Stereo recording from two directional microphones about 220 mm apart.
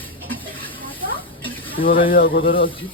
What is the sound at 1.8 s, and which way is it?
Speech, 45° left (ahead or behind).